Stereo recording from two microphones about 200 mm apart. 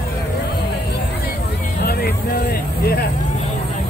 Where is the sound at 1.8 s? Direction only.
50° left (ahead or behind).